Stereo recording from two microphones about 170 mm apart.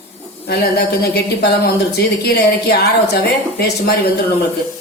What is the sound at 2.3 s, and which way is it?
A woman's voice, 70° left (ahead or behind).